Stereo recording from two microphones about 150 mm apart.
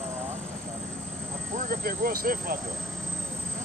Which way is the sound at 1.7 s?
70° right (ahead or behind).